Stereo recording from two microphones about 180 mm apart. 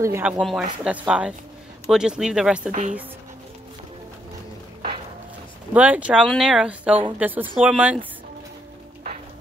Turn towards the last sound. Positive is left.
turn(degrees=-10)  # may be behind; listen again after turning